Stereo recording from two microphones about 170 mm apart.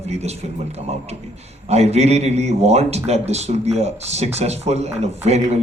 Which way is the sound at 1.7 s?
40° right (ahead or behind).